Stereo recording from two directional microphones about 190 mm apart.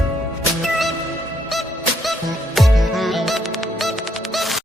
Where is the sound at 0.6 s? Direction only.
Centre (ahead or behind).